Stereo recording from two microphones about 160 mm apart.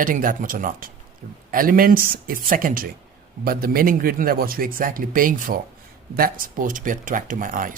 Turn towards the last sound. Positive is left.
turn(degrees=-60)  # may be behind; listen again after turning